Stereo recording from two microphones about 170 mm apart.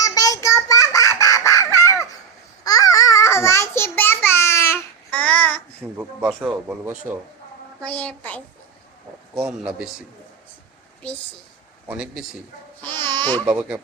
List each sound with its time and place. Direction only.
0.0 s quack: 20° left (ahead or behind)
2.6 s babbling: 20° left (ahead or behind)
6.0 s speech: 5° right (ahead or behind)
7.8 s a child's voice: 10° left (ahead or behind)
9.4 s speech: 5° right (ahead or behind)
11.0 s speech: 5° left (ahead or behind)
11.9 s speech: 5° right (ahead or behind)
12.8 s babbling: 10° left (ahead or behind)
13.4 s speech: 5° right (ahead or behind)